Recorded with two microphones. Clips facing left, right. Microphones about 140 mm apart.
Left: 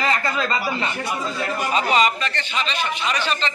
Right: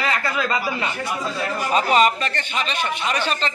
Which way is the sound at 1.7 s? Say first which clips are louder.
Right 3 dB; 45° right (ahead or behind).